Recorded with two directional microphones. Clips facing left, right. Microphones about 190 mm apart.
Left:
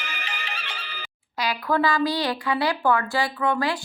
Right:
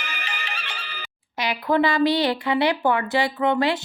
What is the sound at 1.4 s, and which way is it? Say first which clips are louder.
Speech: right 2 dB; 20° right (ahead or behind).